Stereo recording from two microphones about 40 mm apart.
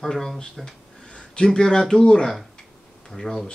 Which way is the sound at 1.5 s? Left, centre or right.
Centre.